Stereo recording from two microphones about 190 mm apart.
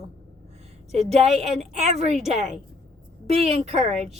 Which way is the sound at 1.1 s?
35° right (ahead or behind).